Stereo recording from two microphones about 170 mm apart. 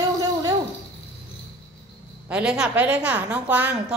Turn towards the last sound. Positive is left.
turn(degrees=-5)  # may be behind; listen again after turning